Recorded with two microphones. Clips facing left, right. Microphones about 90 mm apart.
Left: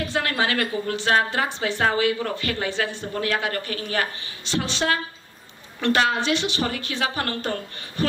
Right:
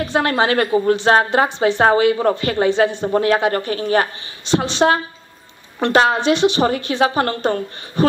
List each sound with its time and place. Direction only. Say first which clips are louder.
0.1 s a woman's voice: right 9 dB; 30° right (ahead or behind)